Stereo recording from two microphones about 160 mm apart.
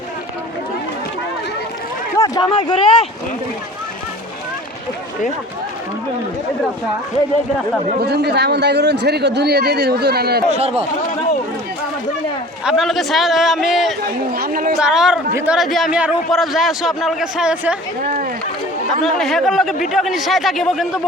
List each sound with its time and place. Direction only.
2.1 s a sound: 20° left (ahead or behind)
2.5 s speech: 30° left (ahead or behind)
8.0 s a man's voice: 90° right
10.5 s speech: 40° right (ahead or behind)
12.6 s a man's voice: centre (ahead or behind)
14.3 s a woman's voice: 70° right (ahead or behind)
14.8 s a man's voice: 5° right (ahead or behind)
19.0 s a man's voice: centre (ahead or behind)